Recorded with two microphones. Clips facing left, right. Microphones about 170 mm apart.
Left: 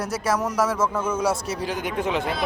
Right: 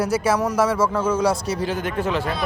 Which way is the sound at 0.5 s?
Centre (ahead or behind).